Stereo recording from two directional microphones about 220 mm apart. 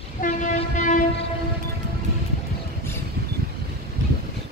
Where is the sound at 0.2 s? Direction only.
35° left (ahead or behind).